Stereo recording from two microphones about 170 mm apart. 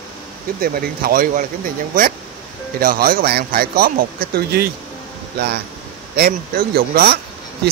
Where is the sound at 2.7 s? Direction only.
60° right (ahead or behind).